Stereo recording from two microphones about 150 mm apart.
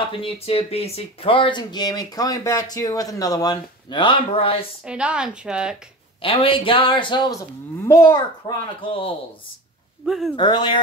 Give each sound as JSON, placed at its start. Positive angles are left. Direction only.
{"t": 0.2, "sound": "speech", "side_deg": 40}
{"t": 4.8, "sound": "a woman's voice", "side_deg": -5}
{"t": 6.2, "sound": "speech", "side_deg": 35}
{"t": 10.0, "sound": "speech", "side_deg": 0}
{"t": 10.3, "sound": "speech", "side_deg": 30}